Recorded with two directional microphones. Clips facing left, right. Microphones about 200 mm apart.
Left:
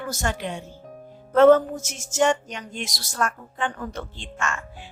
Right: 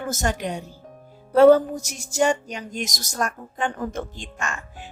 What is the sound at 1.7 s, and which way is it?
Speech, 35° right (ahead or behind).